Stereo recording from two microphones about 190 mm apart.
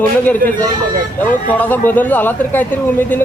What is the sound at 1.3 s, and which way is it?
Speech, 10° left (ahead or behind).